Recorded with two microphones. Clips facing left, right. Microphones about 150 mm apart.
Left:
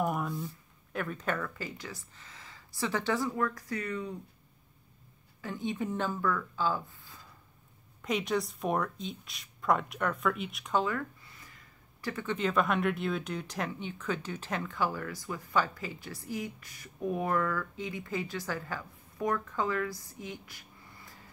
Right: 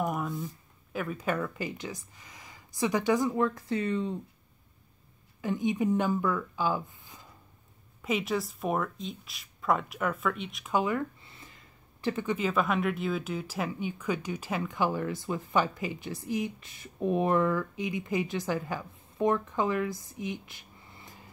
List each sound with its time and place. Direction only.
0.0 s a sound: centre (ahead or behind)
0.9 s speech: 5° right (ahead or behind); by 4.1 s 25° right (ahead or behind)
5.4 s speech: 15° right (ahead or behind)
8.0 s speech: centre (ahead or behind)
10.7 s a sound: 15° right (ahead or behind)
12.0 s speech: 25° right (ahead or behind)
12.3 s speech: 5° right (ahead or behind); by 21.2 s 20° right (ahead or behind)